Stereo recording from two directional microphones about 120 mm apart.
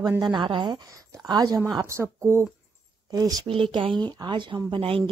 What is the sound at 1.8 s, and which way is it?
Speech, 20° right (ahead or behind).